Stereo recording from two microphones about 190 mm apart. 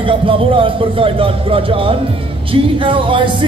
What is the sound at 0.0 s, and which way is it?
A man's voice, 30° right (ahead or behind).